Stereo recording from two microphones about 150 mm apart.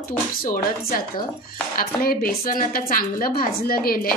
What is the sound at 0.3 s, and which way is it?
Speech, 75° left (ahead or behind).